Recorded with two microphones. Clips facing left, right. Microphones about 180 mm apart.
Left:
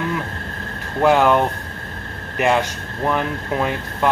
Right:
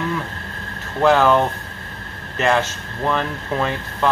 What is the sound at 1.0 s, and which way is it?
Speech, 15° left (ahead or behind).